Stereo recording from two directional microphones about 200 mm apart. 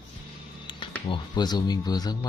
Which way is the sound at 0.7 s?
25° left (ahead or behind).